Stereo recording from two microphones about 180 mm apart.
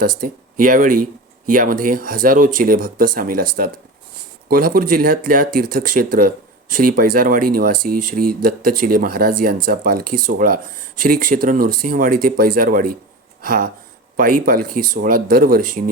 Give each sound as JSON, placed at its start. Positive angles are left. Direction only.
{"t": 0.0, "sound": "speech", "side_deg": -50}